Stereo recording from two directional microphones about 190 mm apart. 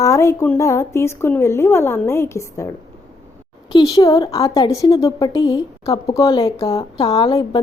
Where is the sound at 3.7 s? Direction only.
20° left (ahead or behind).